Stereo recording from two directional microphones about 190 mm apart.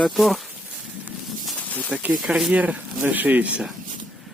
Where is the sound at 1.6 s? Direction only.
10° left (ahead or behind).